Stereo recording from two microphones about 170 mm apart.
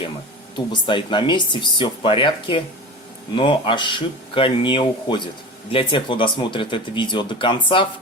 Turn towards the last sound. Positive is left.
turn(degrees=30)  # may be behind; listen again after turning